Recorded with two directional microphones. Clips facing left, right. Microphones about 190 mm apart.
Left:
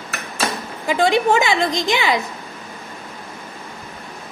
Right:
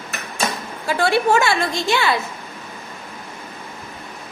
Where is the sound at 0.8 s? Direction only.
15° left (ahead or behind).